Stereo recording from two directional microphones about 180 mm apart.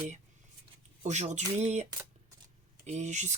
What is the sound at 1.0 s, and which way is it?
Speech, 40° right (ahead or behind).